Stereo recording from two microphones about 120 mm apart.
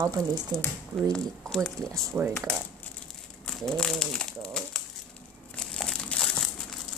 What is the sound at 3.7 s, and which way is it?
Bird, 5° left (ahead or behind).